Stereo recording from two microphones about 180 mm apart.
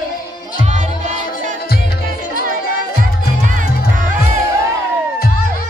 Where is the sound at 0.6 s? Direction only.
40° right (ahead or behind).